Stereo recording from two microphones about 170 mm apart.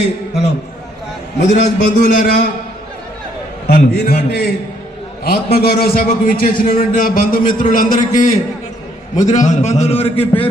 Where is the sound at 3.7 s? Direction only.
60° left (ahead or behind).